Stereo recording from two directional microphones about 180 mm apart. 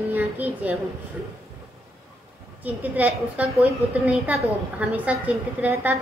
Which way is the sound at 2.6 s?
10° right (ahead or behind).